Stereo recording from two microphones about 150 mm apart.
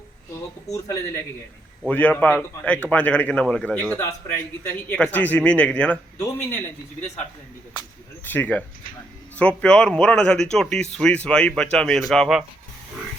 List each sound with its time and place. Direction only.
1.9 s a man's voice: 10° left (ahead or behind)
6.1 s a man's voice: 20° left (ahead or behind)
8.2 s a man's voice: 10° left (ahead or behind)